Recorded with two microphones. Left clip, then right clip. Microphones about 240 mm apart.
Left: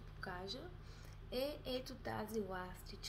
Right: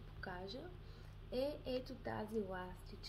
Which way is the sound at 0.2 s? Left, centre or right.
Left.